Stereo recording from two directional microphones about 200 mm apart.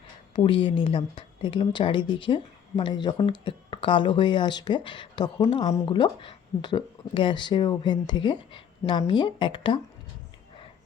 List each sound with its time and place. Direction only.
0.3 s speech: 25° left (ahead or behind)